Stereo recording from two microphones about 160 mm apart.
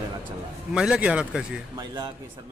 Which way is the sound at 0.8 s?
5° right (ahead or behind).